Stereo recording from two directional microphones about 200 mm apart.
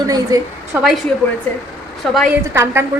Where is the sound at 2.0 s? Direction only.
Centre (ahead or behind).